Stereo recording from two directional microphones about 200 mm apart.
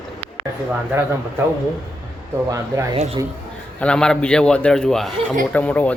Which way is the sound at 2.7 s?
15° right (ahead or behind).